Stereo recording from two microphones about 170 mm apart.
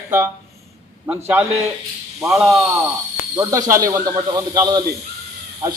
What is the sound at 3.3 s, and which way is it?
A man's voice, 15° right (ahead or behind).